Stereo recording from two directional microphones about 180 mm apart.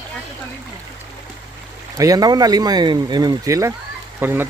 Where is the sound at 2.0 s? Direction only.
20° right (ahead or behind).